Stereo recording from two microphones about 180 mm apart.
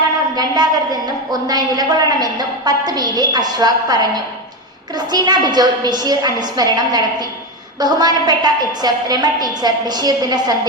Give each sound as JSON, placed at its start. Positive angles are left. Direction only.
{"t": 0.3, "sound": "a woman's voice", "side_deg": -20}